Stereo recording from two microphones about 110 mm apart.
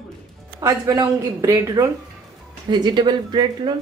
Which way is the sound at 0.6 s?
30° right (ahead or behind).